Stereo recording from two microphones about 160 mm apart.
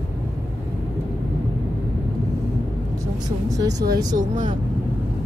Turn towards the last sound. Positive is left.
turn(degrees=-50)  # may be behind; listen again after turning